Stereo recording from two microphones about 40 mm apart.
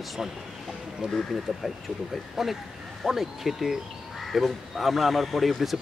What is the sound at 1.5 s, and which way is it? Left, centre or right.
Speech, centre.